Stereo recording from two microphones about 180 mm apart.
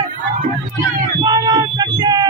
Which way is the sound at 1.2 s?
20° right (ahead or behind).